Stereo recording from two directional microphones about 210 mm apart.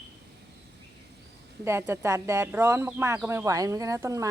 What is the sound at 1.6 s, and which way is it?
Speech, 10° right (ahead or behind).